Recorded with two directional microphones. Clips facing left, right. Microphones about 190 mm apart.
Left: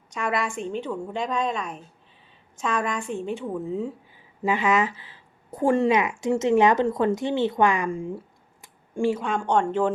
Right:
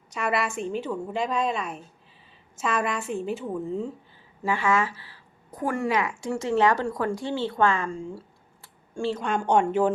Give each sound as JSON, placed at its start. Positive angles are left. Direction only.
{"t": 0.1, "sound": "a woman's voice", "side_deg": -5}
{"t": 4.4, "sound": "a woman's voice", "side_deg": 20}
{"t": 8.6, "sound": "a sound", "side_deg": 15}
{"t": 9.2, "sound": "a woman's voice", "side_deg": -5}